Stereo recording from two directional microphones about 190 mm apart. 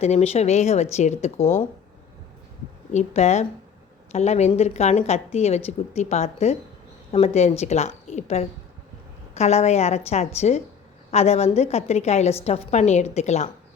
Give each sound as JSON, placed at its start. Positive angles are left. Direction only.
{"t": 0.0, "sound": "a woman's voice", "side_deg": 35}
{"t": 2.9, "sound": "a woman's voice", "side_deg": 35}